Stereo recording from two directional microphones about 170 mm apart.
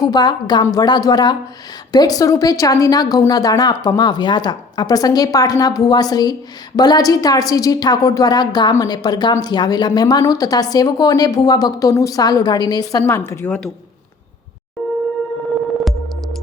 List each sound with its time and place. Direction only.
0.0 s a woman's voice: 25° left (ahead or behind)
15.8 s music: centre (ahead or behind)